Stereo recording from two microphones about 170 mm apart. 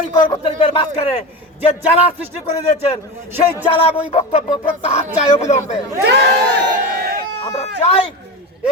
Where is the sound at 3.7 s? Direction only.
35° left (ahead or behind).